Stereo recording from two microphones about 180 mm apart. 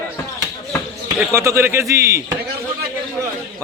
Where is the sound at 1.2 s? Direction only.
15° right (ahead or behind).